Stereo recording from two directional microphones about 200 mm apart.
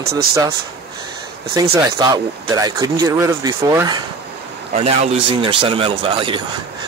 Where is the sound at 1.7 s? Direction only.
20° right (ahead or behind).